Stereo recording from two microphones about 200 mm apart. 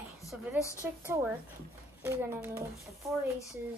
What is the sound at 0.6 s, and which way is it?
Speech, 15° left (ahead or behind).